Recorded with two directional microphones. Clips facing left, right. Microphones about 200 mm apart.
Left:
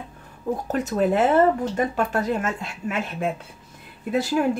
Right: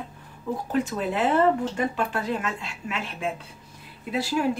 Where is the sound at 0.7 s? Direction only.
45° left (ahead or behind).